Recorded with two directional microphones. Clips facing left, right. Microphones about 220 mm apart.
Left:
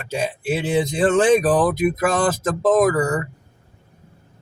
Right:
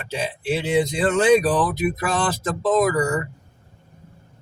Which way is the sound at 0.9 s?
50° left (ahead or behind).